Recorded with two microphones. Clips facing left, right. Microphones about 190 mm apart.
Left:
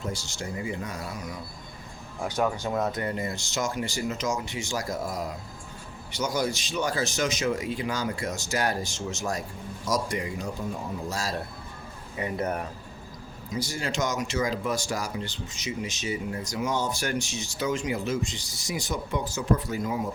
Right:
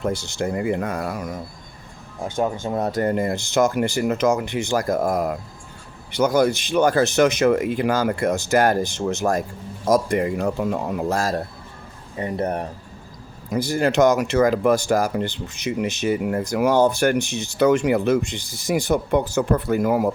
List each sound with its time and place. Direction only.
0.0 s speech: 60° right (ahead or behind)
2.2 s speech: 25° right (ahead or behind); by 11.4 s 50° right (ahead or behind)
12.1 s speech: 35° right (ahead or behind)
13.5 s speech: 55° right (ahead or behind)